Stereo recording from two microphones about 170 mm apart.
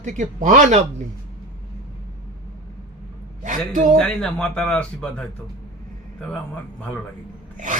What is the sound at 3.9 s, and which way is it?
A man's voice, 5° left (ahead or behind).